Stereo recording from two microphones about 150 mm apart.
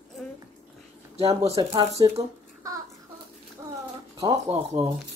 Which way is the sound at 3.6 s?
25° right (ahead or behind).